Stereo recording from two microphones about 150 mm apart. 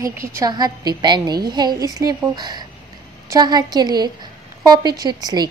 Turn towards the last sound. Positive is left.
turn(degrees=-30)  # may be behind; listen again after turning